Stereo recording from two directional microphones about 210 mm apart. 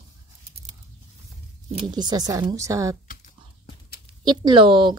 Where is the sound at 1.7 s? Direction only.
20° right (ahead or behind).